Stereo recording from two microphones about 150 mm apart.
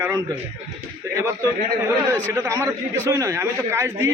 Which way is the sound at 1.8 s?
15° right (ahead or behind).